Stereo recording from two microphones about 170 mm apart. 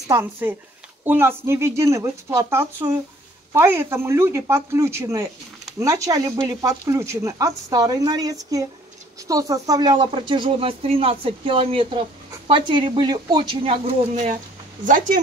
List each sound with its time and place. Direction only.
0.1 s speech: 10° right (ahead or behind); by 14.3 s 35° right (ahead or behind)